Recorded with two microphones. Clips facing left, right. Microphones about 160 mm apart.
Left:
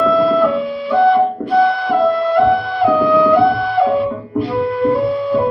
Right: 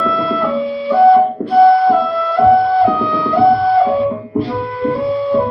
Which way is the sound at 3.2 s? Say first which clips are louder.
Even; 30° right (ahead or behind).